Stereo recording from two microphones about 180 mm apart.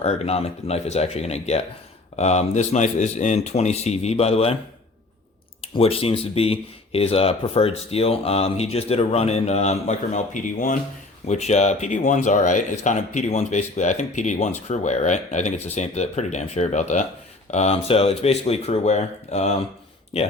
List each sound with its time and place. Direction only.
0.0 s speech: 35° left (ahead or behind)
5.6 s speech: 30° left (ahead or behind)